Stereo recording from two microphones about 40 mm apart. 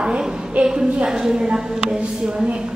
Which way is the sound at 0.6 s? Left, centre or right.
Right.